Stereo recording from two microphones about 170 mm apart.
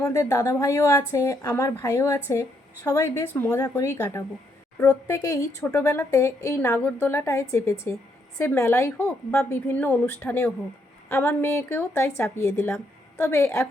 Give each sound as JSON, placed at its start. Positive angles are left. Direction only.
{"t": 0.0, "sound": "a woman's voice", "side_deg": 15}